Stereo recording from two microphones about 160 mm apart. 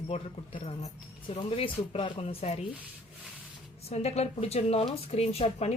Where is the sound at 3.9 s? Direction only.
40° left (ahead or behind).